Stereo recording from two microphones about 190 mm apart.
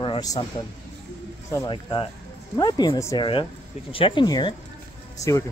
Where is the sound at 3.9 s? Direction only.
25° left (ahead or behind).